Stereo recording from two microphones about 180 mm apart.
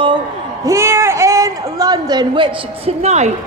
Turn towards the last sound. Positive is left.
turn(degrees=-35)  # may be behind; listen again after turning